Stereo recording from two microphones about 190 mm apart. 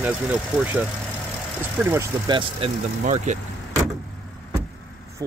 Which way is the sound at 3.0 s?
40° right (ahead or behind).